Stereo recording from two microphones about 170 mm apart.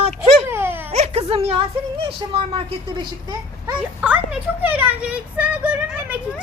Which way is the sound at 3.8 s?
5° right (ahead or behind).